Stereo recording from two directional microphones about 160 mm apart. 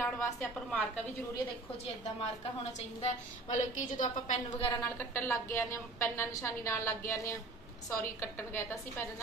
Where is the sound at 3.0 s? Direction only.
50° left (ahead or behind).